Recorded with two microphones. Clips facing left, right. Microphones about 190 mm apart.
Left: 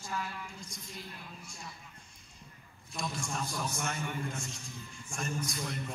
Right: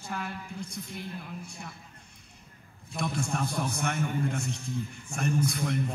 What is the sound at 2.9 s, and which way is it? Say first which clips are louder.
A woman's voice: right 6 dB; 60° right (ahead or behind).